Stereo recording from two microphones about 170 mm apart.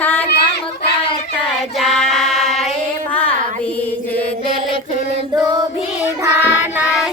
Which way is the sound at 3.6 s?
10° left (ahead or behind).